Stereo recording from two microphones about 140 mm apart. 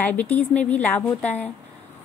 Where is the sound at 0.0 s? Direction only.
10° left (ahead or behind).